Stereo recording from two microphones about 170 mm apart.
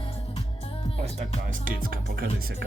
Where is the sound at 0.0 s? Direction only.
35° left (ahead or behind).